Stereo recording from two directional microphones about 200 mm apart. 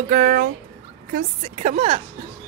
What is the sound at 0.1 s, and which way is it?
A woman's voice, 45° right (ahead or behind).